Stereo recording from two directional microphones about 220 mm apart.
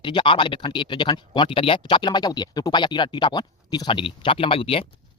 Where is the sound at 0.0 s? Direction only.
20° left (ahead or behind).